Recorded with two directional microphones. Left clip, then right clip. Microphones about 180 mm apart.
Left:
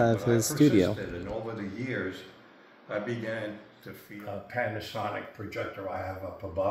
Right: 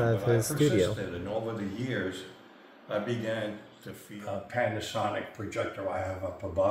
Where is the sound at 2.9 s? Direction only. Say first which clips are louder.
Right 1 dB; 5° left (ahead or behind).